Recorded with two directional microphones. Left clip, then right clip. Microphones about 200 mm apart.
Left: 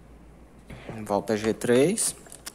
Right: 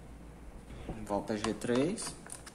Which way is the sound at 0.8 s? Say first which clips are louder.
Left 8 dB; 40° left (ahead or behind).